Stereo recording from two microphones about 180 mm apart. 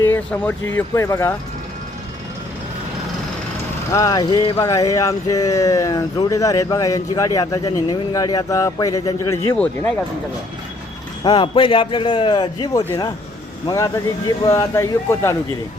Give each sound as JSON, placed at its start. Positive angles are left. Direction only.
{"t": 0.0, "sound": "speech", "side_deg": 10}
{"t": 3.9, "sound": "speech", "side_deg": 20}
{"t": 11.2, "sound": "speech", "side_deg": 25}